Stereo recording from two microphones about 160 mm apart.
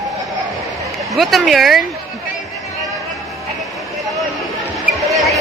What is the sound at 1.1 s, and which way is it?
Speech, centre (ahead or behind).